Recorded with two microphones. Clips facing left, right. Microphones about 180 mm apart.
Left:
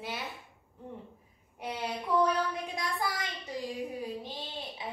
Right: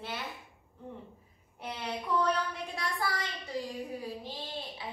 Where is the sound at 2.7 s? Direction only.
15° left (ahead or behind).